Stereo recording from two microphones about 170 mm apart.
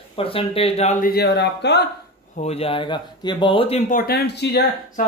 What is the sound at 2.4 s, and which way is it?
Speech, 35° left (ahead or behind).